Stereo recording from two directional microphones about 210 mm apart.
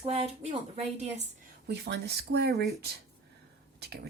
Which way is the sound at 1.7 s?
55° right (ahead or behind).